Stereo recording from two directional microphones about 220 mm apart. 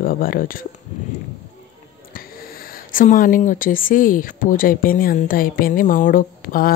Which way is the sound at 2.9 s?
40° left (ahead or behind).